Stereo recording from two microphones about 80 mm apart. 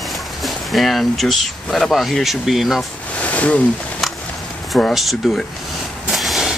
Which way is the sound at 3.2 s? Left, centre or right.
Centre.